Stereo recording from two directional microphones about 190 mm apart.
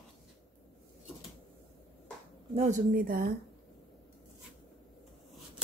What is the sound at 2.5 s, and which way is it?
Speech, 35° right (ahead or behind).